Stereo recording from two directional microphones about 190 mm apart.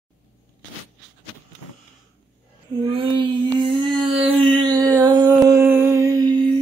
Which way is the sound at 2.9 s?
30° right (ahead or behind).